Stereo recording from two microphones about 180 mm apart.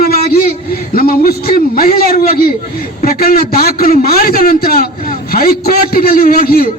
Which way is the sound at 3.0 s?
55° left (ahead or behind).